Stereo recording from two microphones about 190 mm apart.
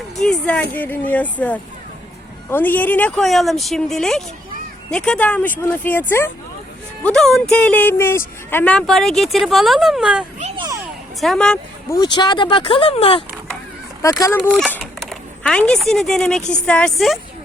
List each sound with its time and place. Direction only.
0.2 s speech: 5° left (ahead or behind)
11.9 s speech: 20° left (ahead or behind)
14.0 s speech: 15° left (ahead or behind)
14.4 s speech: centre (ahead or behind)
14.8 s a sound: centre (ahead or behind)
16.5 s speech: 5° left (ahead or behind)